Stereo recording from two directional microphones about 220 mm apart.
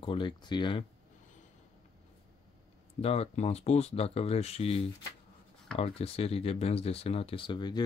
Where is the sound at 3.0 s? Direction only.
25° left (ahead or behind).